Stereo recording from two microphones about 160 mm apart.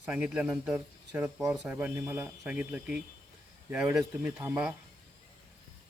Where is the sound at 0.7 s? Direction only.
15° right (ahead or behind).